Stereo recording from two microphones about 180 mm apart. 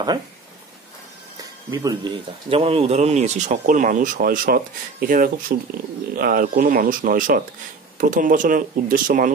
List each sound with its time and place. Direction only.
1.4 s speech: 20° right (ahead or behind)
2.5 s speech: 35° right (ahead or behind)